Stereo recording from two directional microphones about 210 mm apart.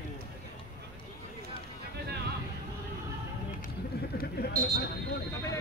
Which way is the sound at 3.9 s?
50° left (ahead or behind).